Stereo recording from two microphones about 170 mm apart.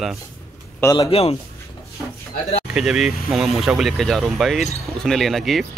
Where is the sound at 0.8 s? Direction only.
15° left (ahead or behind).